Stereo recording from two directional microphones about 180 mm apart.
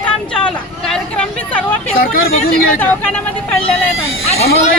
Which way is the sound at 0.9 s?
10° left (ahead or behind).